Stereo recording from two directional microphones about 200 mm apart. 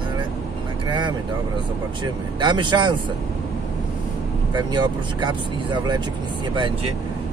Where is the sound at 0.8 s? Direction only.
25° right (ahead or behind).